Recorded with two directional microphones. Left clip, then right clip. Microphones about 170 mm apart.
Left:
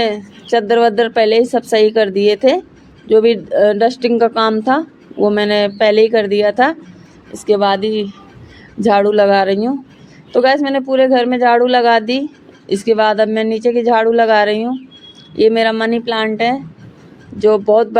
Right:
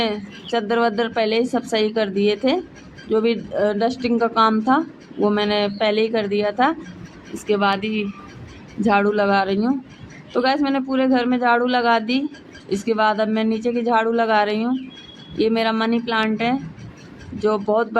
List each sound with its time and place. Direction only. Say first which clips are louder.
0.5 s speech: left 8 dB; 30° left (ahead or behind)